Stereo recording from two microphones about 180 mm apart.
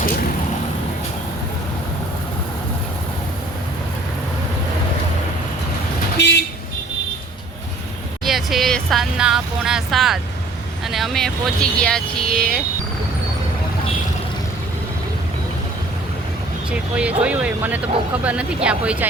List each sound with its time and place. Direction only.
6.1 s vehicle: 70° left (ahead or behind)
8.2 s music: centre (ahead or behind)
10.8 s speech: centre (ahead or behind)
16.7 s speech: 5° right (ahead or behind)